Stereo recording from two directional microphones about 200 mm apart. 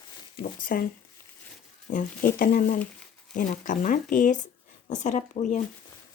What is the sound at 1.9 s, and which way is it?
Speech, 40° left (ahead or behind).